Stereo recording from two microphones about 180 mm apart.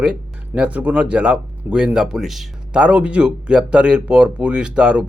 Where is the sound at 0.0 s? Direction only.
5° right (ahead or behind).